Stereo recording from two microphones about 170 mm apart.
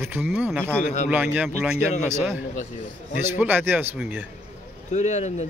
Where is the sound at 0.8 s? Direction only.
45° left (ahead or behind).